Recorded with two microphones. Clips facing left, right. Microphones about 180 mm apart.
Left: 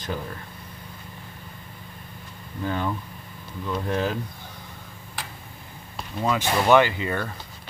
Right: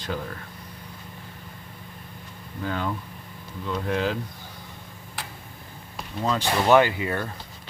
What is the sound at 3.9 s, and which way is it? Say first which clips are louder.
Speech: even; 15° left (ahead or behind).